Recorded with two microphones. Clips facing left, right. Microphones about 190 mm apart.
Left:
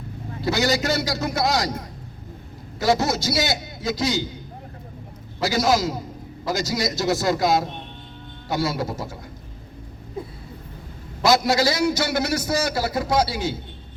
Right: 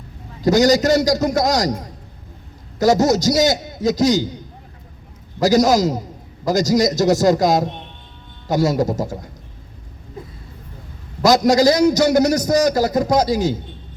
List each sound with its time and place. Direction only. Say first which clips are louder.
0.4 s a man's voice: right 8 dB; 40° right (ahead or behind)
2.7 s a man's voice: right 6 dB; 45° right (ahead or behind)
5.4 s a man's voice: right 7 dB; 40° right (ahead or behind)
11.2 s a man's voice: right 6 dB; 40° right (ahead or behind)